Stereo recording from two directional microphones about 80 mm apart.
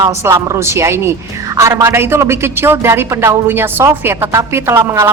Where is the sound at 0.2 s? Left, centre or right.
Right.